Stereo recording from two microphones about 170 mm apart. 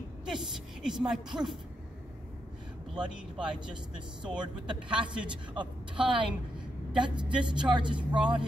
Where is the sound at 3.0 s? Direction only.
5° right (ahead or behind).